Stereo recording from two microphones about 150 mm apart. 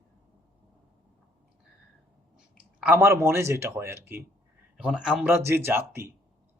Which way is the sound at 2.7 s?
15° right (ahead or behind).